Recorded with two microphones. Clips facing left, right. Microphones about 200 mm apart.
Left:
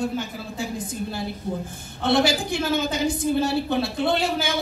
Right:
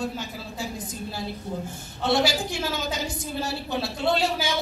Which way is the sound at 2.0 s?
55° left (ahead or behind).